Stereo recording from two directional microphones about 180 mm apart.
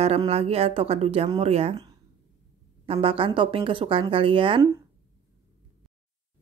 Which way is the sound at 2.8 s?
30° right (ahead or behind).